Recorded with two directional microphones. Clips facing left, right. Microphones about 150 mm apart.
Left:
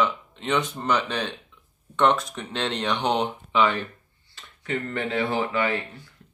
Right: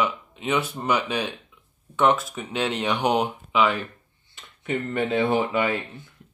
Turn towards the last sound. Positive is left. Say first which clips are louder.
# right 1 dB
turn(degrees=-20)  # may be behind; listen again after turning